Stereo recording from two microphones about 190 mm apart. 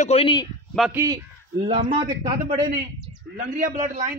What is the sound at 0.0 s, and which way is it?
Speech, 30° left (ahead or behind).